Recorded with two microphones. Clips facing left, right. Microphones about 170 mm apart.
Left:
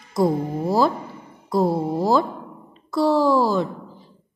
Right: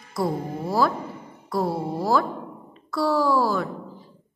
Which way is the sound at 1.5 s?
20° left (ahead or behind).